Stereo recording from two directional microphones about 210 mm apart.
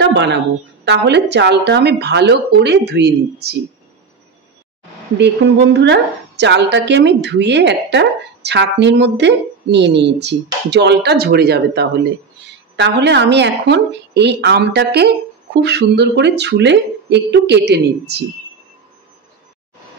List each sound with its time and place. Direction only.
0.0 s a sound: 55° right (ahead or behind)
0.8 s speech: 55° right (ahead or behind)
5.1 s a woman's voice: 55° right (ahead or behind)